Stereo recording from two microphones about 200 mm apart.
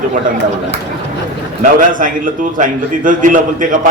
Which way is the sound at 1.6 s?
45° right (ahead or behind).